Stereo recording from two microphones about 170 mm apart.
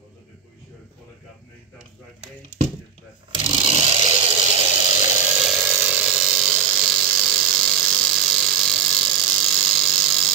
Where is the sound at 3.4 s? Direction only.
35° right (ahead or behind).